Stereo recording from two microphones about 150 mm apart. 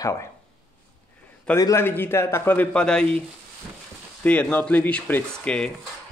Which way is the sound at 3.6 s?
5° right (ahead or behind).